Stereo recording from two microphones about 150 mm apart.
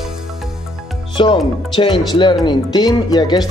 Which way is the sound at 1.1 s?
30° left (ahead or behind).